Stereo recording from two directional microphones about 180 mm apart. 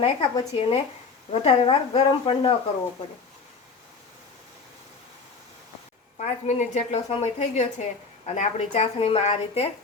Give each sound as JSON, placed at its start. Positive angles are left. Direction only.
{"t": 0.0, "sound": "a woman's voice", "side_deg": 30}
{"t": 6.1, "sound": "a woman's voice", "side_deg": 40}